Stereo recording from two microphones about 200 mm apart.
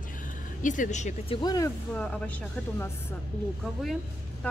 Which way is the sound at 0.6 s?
40° left (ahead or behind).